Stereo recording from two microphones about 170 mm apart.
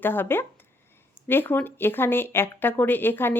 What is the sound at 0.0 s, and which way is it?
A woman's voice, 10° left (ahead or behind).